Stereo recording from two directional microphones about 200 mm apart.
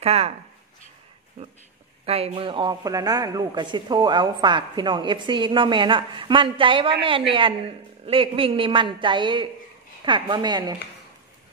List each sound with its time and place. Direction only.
0.0 s speech: 30° right (ahead or behind)
2.0 s a man's voice: 30° right (ahead or behind)